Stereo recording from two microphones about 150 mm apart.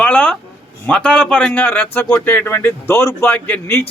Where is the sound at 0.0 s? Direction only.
10° left (ahead or behind).